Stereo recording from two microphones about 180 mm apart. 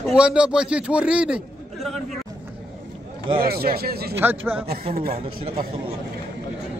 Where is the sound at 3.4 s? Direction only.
55° right (ahead or behind).